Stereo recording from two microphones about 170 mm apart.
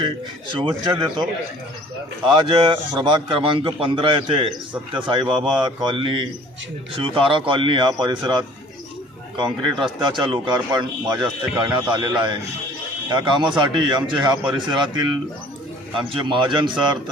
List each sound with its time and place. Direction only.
0.6 s a man's voice: 25° right (ahead or behind)
16.0 s a man's voice: 30° right (ahead or behind)